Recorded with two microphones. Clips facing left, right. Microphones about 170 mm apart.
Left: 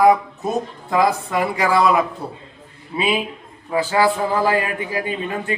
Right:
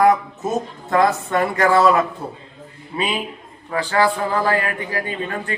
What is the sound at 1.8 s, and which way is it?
A man's voice, 15° left (ahead or behind).